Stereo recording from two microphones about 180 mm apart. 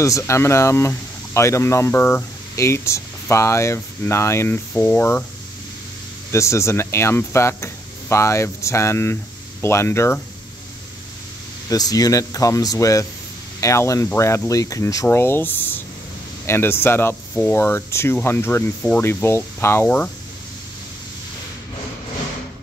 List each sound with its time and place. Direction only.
0.0 s speech: 15° left (ahead or behind)
6.3 s speech: 15° left (ahead or behind)
11.7 s speech: 20° left (ahead or behind)